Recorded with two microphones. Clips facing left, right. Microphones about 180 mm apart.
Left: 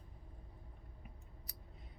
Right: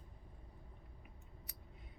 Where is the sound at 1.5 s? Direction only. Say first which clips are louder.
Left 1 dB; 35° left (ahead or behind).